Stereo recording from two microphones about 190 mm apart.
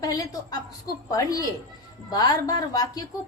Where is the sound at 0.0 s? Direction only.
20° left (ahead or behind).